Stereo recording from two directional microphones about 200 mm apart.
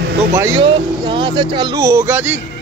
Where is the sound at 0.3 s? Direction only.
15° right (ahead or behind).